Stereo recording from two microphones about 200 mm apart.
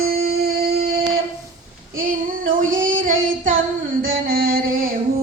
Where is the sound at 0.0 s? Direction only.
50° right (ahead or behind).